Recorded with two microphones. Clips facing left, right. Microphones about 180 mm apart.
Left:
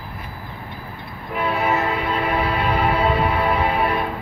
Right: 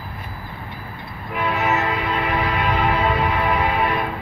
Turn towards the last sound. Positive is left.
turn(degrees=35)  # may be behind; listen again after turning